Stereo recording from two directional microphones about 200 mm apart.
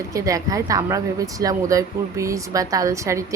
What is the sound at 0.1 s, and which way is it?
A woman's voice, 15° right (ahead or behind).